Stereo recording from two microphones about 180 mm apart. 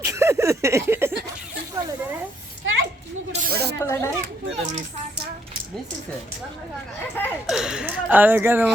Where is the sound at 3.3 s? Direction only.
55° right (ahead or behind).